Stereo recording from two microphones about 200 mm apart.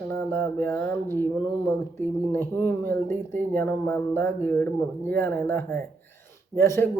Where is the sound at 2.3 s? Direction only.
10° left (ahead or behind).